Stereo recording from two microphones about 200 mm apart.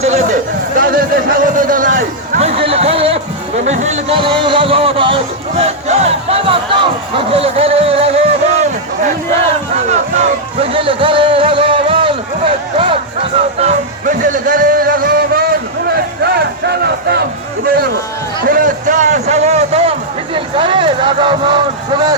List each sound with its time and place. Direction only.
0.0 s speech: 35° right (ahead or behind)
0.8 s a man's voice: 45° right (ahead or behind); by 8.3 s 30° right (ahead or behind)
9.9 s music: 30° right (ahead or behind); by 15.4 s 50° right (ahead or behind)
15.9 s crowd: 55° right (ahead or behind)
18.4 s a sound: 45° right (ahead or behind); by 21.6 s 25° right (ahead or behind)